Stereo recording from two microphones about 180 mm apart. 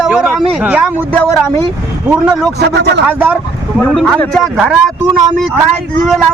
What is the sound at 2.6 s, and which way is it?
Speech, 70° right (ahead or behind).